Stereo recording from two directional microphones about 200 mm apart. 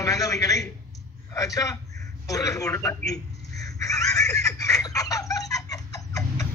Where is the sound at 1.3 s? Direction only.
15° left (ahead or behind).